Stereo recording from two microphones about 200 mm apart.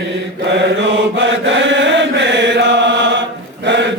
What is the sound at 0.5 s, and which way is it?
Mantra, 65° right (ahead or behind).